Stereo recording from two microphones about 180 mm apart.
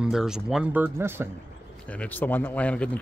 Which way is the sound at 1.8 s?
10° left (ahead or behind).